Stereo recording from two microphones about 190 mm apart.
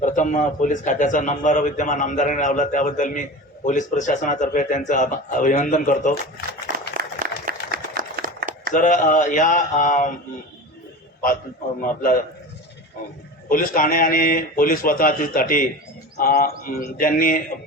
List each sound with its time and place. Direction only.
0.0 s a man's voice: 40° left (ahead or behind)
6.7 s a sound: 50° right (ahead or behind)
8.7 s a man's voice: 40° left (ahead or behind)
13.5 s a man's voice: 45° left (ahead or behind)